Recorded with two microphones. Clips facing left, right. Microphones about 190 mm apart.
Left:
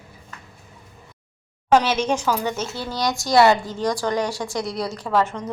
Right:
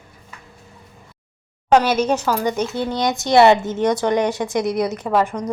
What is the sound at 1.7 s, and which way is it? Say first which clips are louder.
A woman's voice: right 3 dB; 10° right (ahead or behind).